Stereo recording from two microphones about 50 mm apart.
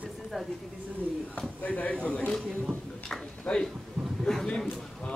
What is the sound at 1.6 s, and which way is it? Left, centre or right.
Speech, left.